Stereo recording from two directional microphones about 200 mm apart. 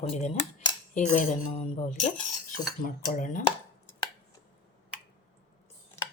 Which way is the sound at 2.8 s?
40° left (ahead or behind).